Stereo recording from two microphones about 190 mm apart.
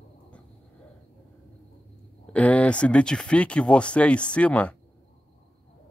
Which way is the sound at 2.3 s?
5° left (ahead or behind).